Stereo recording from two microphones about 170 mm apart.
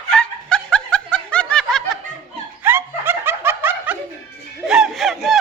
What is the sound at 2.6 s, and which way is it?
Snicker, 15° right (ahead or behind).